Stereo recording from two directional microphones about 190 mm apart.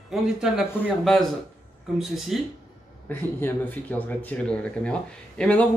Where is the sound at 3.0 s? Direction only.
10° left (ahead or behind).